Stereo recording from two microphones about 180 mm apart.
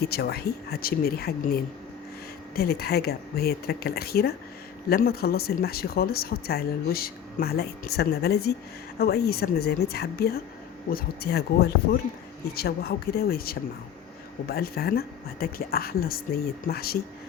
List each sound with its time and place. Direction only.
0.0 s speech: 60° left (ahead or behind)